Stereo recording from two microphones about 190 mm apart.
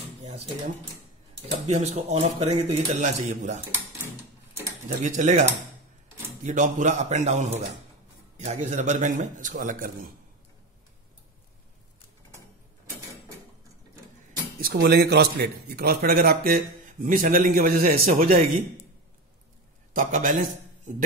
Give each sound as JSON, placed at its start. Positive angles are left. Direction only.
{"t": 1.7, "sound": "speech", "side_deg": -35}
{"t": 4.8, "sound": "speech", "side_deg": -40}
{"t": 6.4, "sound": "a man's voice", "side_deg": -40}
{"t": 14.6, "sound": "a man's voice", "side_deg": -55}
{"t": 19.9, "sound": "a man's voice", "side_deg": -45}